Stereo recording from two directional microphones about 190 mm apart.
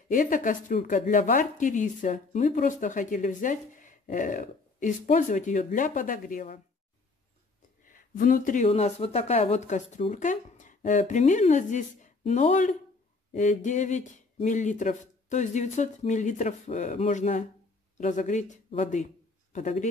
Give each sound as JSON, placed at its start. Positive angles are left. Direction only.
{"t": 0.1, "sound": "speech", "side_deg": 45}
{"t": 7.9, "sound": "a man's voice", "side_deg": 45}